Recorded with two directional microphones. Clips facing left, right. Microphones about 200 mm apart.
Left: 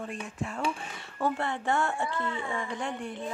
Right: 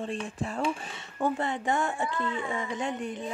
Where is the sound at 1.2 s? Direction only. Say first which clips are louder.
Right 1 dB; 15° right (ahead or behind).